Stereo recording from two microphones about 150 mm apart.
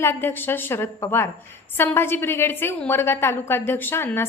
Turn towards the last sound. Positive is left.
turn(degrees=15)  # may be behind; listen again after turning